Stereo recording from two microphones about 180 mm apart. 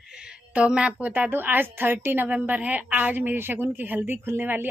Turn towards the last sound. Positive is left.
turn(degrees=-10)  # may be behind; listen again after turning